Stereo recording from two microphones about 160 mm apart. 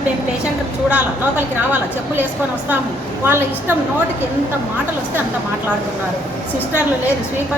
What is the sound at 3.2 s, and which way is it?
Speech, 15° right (ahead or behind).